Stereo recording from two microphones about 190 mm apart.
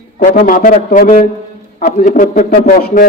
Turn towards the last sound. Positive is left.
turn(degrees=50)  # may be behind; listen again after turning